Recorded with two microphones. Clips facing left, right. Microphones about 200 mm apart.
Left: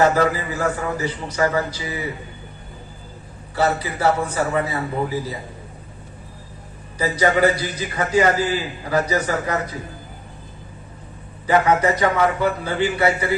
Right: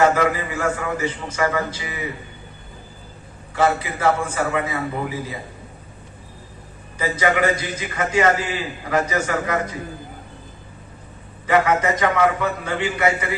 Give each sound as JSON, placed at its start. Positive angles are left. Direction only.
{"t": 0.2, "sound": "a man's voice", "side_deg": 35}
{"t": 3.5, "sound": "a man's voice", "side_deg": 35}
{"t": 7.0, "sound": "a man's voice", "side_deg": 35}
{"t": 11.4, "sound": "a man's voice", "side_deg": 30}